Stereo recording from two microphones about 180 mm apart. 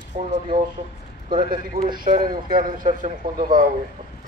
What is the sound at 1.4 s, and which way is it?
Mantra, 50° right (ahead or behind).